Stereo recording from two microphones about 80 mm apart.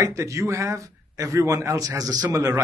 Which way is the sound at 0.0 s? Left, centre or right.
Right.